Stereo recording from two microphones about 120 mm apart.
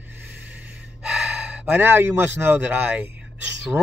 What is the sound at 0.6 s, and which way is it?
Gasp, 10° right (ahead or behind).